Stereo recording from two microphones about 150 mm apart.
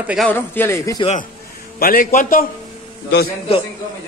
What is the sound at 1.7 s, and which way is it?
Speech, 70° left (ahead or behind).